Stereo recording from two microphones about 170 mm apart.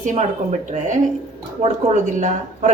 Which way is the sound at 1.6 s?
45° right (ahead or behind).